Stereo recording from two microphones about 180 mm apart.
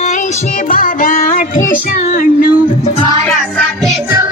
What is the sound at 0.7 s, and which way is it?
Music, 50° left (ahead or behind).